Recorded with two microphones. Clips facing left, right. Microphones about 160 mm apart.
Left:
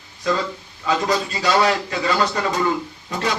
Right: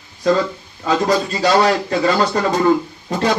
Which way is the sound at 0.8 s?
35° right (ahead or behind).